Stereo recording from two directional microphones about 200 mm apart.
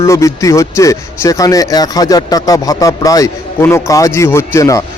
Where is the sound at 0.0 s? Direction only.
15° left (ahead or behind).